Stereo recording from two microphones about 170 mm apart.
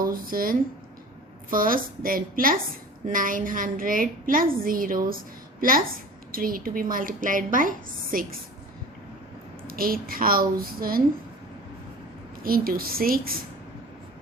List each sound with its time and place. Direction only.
0.0 s a woman's voice: 60° right (ahead or behind)
9.6 s a woman's voice: 60° right (ahead or behind)
12.4 s a woman's voice: 60° right (ahead or behind)